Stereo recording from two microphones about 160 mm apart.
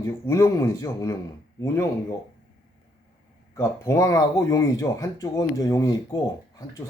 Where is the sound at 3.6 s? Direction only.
20° left (ahead or behind).